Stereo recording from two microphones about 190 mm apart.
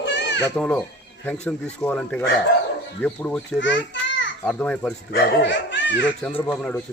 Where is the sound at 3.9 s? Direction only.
75° left (ahead or behind).